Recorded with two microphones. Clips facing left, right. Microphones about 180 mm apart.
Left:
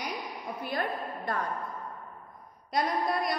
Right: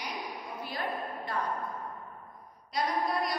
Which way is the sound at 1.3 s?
50° left (ahead or behind).